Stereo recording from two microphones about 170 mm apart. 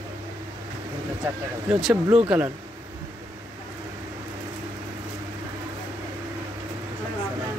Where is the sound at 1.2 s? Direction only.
5° right (ahead or behind).